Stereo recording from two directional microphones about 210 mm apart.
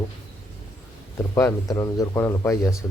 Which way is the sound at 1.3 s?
15° left (ahead or behind).